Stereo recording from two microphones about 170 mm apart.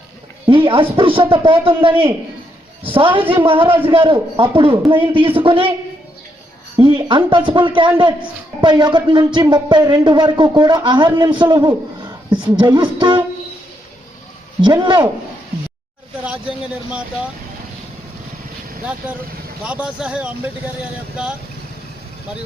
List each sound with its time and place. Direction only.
0.4 s speech: 30° right (ahead or behind)
6.7 s speech: 30° right (ahead or behind)
14.6 s speech: 25° right (ahead or behind)
19.6 s speech: 5° right (ahead or behind)